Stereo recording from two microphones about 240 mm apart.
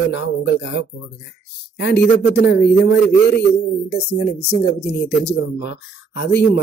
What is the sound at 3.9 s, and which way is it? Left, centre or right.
Speech, left.